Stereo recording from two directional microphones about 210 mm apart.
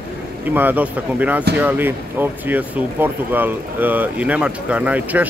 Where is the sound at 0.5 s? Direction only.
10° right (ahead or behind).